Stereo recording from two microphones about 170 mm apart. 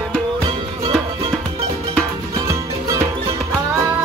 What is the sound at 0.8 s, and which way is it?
Music, 30° right (ahead or behind).